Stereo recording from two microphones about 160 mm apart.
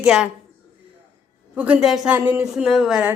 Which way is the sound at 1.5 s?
10° right (ahead or behind).